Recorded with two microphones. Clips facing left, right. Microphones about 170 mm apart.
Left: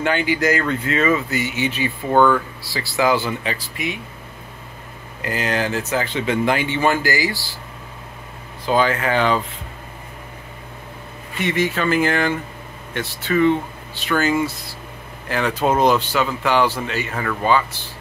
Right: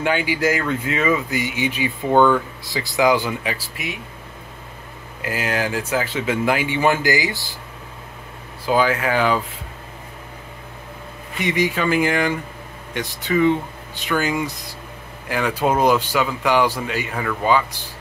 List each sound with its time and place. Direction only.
0.0 s speech: 10° right (ahead or behind)
5.2 s speech: 5° right (ahead or behind)
8.6 s speech: 10° right (ahead or behind)
11.3 s speech: 15° right (ahead or behind)